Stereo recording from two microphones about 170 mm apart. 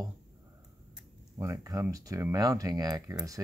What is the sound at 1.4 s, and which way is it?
Speech, 20° right (ahead or behind).